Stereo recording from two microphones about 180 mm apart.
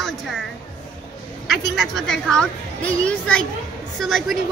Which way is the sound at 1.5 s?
Centre (ahead or behind).